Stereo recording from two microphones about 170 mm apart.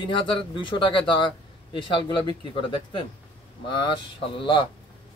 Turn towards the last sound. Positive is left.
turn(degrees=30)  # may be behind; listen again after turning